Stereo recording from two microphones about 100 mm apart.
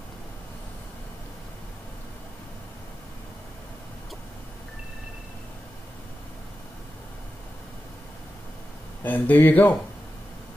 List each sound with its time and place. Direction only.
9.0 s speech: 20° left (ahead or behind)